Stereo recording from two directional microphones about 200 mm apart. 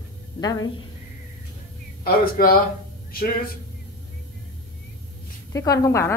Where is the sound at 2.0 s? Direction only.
45° left (ahead or behind).